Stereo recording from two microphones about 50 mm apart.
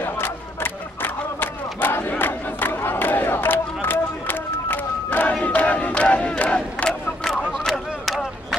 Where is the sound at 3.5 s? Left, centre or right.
Left.